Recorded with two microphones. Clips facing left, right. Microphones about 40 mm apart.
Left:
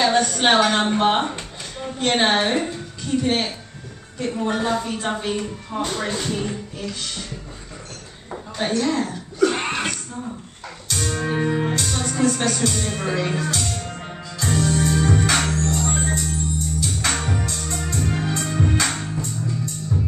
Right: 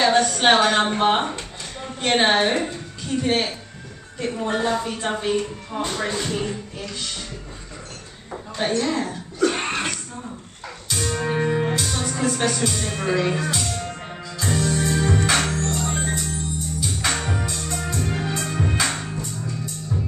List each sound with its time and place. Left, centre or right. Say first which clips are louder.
0.0 s a woman's voice: right 1 dB; centre
4.2 s music: even; centre
8.3 s speech: even; centre
9.4 s music: left 2 dB; centre